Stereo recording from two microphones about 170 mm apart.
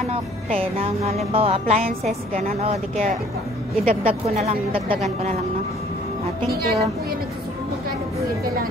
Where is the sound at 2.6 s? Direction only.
40° right (ahead or behind).